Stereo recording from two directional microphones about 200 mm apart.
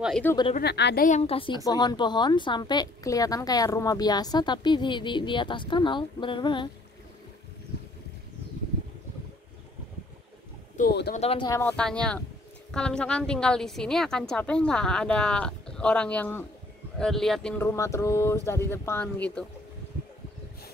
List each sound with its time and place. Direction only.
0.2 s speech: 10° left (ahead or behind)
0.6 s a woman's voice: 55° left (ahead or behind)
1.0 s a woman's voice: 35° left (ahead or behind)
10.8 s speech: 55° left (ahead or behind)
11.1 s a woman's voice: 30° left (ahead or behind)
11.4 s a woman's voice: 15° left (ahead or behind)